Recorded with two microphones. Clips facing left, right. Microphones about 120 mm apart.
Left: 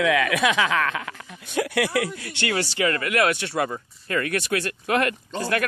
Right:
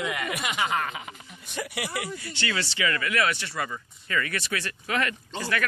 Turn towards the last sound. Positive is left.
turn(degrees=50)  # may be behind; listen again after turning